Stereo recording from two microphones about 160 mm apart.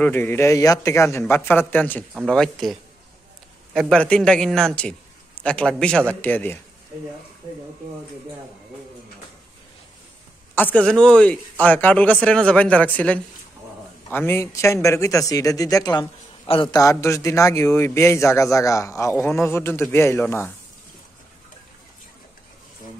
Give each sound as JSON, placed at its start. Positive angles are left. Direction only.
{"t": 0.0, "sound": "a man's voice", "side_deg": 10}
{"t": 10.5, "sound": "speech", "side_deg": 10}